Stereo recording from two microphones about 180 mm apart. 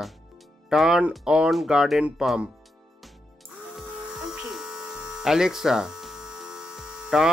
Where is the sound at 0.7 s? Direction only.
5° right (ahead or behind).